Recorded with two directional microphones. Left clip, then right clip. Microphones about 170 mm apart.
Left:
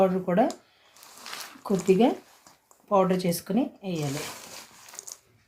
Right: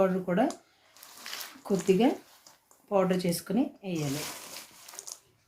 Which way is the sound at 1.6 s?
30° left (ahead or behind).